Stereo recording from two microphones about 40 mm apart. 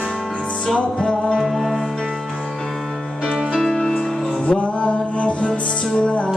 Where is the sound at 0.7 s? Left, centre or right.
Left.